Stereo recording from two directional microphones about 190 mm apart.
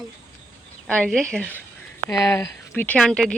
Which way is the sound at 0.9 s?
5° left (ahead or behind).